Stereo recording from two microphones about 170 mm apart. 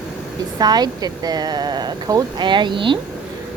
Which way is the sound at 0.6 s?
25° right (ahead or behind).